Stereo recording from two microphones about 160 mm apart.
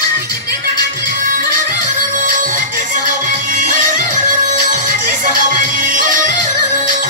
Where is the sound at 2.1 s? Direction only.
55° right (ahead or behind).